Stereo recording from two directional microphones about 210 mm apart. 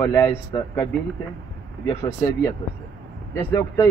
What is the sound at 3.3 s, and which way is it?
Speech, 15° left (ahead or behind).